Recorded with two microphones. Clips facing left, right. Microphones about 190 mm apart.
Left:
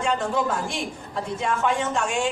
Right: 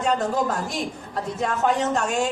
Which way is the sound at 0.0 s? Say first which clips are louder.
Right 1 dB; 40° right (ahead or behind).